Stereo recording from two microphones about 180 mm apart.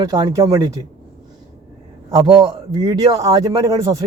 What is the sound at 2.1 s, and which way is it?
Speech, 20° right (ahead or behind).